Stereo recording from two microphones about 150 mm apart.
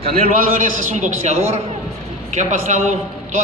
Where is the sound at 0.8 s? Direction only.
50° right (ahead or behind).